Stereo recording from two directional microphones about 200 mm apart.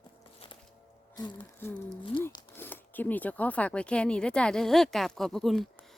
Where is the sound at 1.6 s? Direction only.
10° left (ahead or behind).